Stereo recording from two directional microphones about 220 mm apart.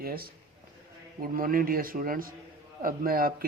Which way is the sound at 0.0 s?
45° right (ahead or behind).